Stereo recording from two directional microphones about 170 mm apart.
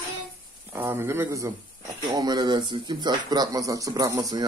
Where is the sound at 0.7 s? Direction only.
15° right (ahead or behind).